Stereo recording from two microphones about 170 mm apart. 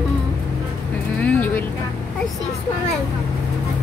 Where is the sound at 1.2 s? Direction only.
10° left (ahead or behind).